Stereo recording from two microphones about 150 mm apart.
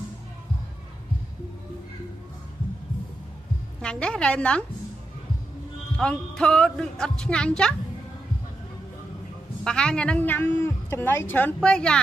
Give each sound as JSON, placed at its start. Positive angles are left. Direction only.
{"t": 3.8, "sound": "a woman's voice", "side_deg": 5}
{"t": 5.9, "sound": "a woman's voice", "side_deg": 5}
{"t": 9.7, "sound": "a woman's voice", "side_deg": 5}